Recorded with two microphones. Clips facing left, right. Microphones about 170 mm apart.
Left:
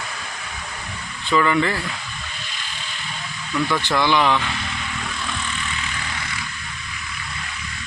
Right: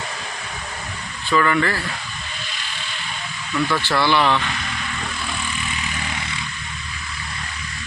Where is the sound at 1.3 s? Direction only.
15° left (ahead or behind).